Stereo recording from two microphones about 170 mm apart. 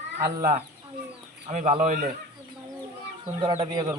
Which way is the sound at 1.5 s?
45° right (ahead or behind).